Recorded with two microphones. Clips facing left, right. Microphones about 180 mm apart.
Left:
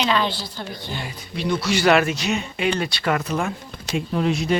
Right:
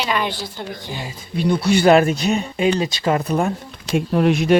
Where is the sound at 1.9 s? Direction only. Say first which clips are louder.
Right 5 dB; 35° right (ahead or behind).